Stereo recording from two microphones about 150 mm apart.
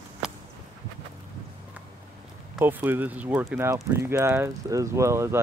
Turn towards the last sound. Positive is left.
turn(degrees=-20)  # may be behind; listen again after turning